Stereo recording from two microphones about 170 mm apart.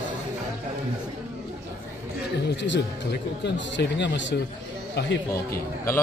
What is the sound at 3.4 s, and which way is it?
Speech, 90° left.